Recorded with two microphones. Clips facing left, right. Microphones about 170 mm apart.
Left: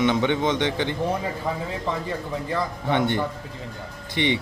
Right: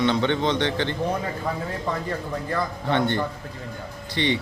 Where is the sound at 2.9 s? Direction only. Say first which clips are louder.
Even; 15° left (ahead or behind).